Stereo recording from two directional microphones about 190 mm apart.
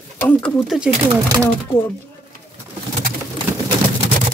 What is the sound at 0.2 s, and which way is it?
Speech, 5° left (ahead or behind).